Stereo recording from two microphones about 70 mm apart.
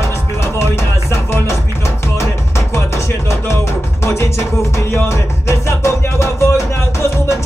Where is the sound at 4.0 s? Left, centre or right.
Left.